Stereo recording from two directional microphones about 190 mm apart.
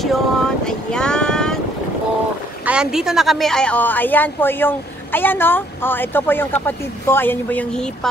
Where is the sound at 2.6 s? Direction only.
5° right (ahead or behind).